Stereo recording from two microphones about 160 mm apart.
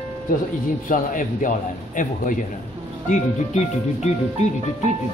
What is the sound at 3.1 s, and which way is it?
Speech, 45° left (ahead or behind).